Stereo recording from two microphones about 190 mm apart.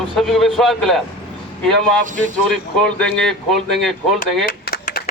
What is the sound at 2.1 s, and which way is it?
Speech, 40° right (ahead or behind).